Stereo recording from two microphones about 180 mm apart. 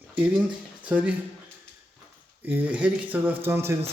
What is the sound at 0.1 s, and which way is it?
Speech, 10° right (ahead or behind).